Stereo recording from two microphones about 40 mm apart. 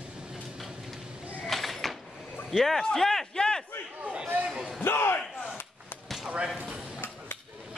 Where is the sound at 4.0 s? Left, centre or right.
Right.